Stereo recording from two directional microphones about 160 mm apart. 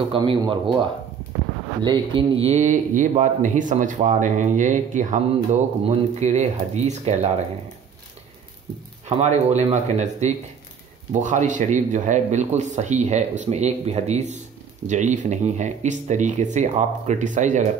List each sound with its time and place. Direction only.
0.1 s speech: 30° right (ahead or behind)
1.8 s a man's voice: 30° right (ahead or behind)
9.1 s a man's voice: 45° right (ahead or behind)